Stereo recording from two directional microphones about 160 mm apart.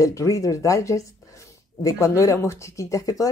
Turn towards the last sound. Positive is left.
turn(degrees=20)  # may be behind; listen again after turning